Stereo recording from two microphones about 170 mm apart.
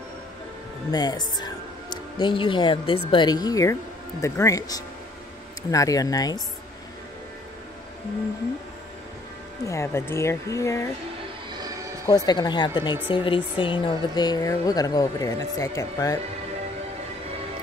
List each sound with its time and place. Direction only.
0.9 s speech: 25° left (ahead or behind)
9.7 s speech: 15° left (ahead or behind)
12.3 s speech: 25° left (ahead or behind)